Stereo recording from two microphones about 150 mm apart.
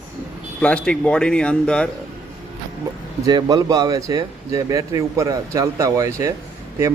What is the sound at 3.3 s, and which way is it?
Speech, 30° right (ahead or behind).